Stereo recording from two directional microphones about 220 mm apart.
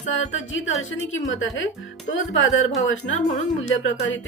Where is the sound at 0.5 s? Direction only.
60° left (ahead or behind).